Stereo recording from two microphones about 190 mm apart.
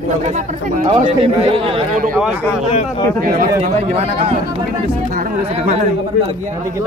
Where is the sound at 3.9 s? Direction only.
35° right (ahead or behind).